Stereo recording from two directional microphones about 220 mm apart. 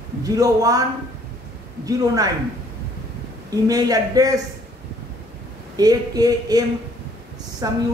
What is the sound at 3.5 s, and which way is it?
Speech, 15° right (ahead or behind).